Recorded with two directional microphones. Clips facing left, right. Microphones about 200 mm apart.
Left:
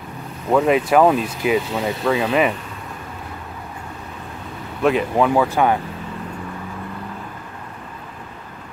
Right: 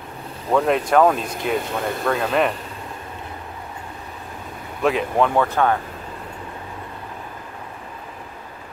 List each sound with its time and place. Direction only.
0.5 s speech: 5° left (ahead or behind)
4.8 s speech: centre (ahead or behind)